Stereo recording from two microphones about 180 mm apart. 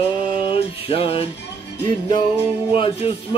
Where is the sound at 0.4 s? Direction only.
30° left (ahead or behind).